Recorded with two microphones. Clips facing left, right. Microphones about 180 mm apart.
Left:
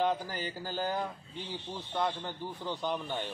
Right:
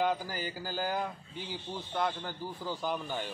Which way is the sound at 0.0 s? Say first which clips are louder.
Even; centre (ahead or behind).